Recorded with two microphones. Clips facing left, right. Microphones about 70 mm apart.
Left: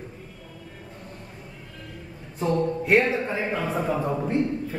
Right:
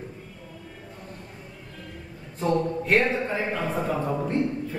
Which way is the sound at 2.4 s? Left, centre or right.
Centre.